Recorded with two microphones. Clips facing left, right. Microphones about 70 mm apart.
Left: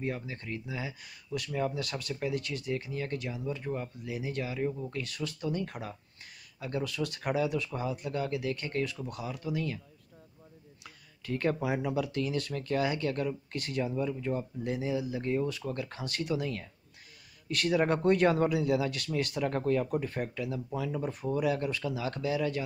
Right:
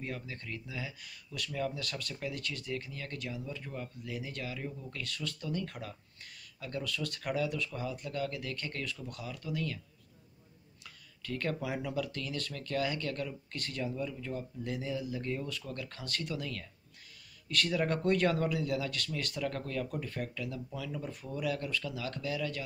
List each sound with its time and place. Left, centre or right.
0.0 s speech: left
4.7 s speech: left
5.0 s speech: centre
10.8 s speech: centre